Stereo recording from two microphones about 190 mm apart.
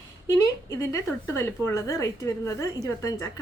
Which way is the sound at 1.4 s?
15° left (ahead or behind).